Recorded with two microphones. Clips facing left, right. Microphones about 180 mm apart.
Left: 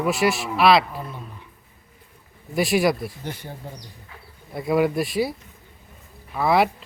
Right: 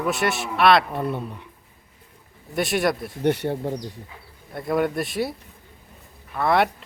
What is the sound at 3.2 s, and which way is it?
Speech, 70° right (ahead or behind).